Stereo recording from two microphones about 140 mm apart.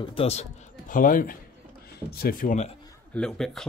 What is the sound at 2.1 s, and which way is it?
Speech, 90° left.